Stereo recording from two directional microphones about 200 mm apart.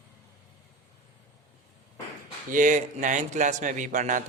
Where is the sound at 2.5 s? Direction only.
40° right (ahead or behind).